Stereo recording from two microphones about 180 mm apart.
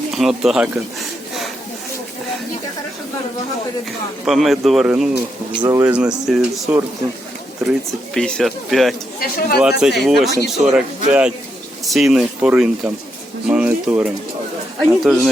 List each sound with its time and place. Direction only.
0.1 s a sound: centre (ahead or behind)
4.3 s speech: centre (ahead or behind)
5.5 s speech: 20° right (ahead or behind)
5.8 s speech: 5° right (ahead or behind)
9.2 s speech: 55° left (ahead or behind)
9.8 s speech: centre (ahead or behind)